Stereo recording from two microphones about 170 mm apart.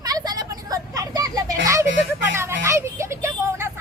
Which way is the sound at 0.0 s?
20° right (ahead or behind).